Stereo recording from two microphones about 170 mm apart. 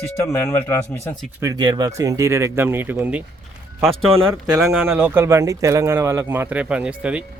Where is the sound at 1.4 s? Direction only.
20° right (ahead or behind).